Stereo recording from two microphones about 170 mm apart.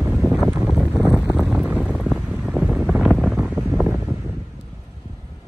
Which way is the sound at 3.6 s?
5° right (ahead or behind).